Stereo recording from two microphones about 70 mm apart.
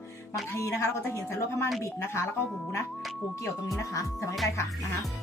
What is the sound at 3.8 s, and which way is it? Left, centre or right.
Speech, left.